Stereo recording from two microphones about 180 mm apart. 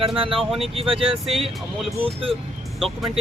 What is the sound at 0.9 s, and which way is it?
Speech, 30° right (ahead or behind).